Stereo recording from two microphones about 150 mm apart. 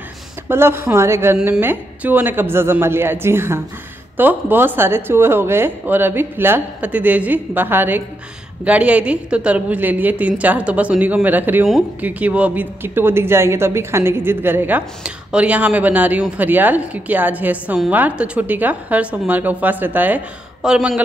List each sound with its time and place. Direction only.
0.5 s a man's voice: 15° right (ahead or behind)